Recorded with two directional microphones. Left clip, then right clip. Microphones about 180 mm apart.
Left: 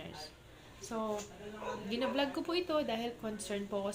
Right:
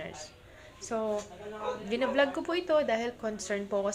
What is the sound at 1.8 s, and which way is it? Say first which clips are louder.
A woman's voice: right 7 dB; 10° left (ahead or behind).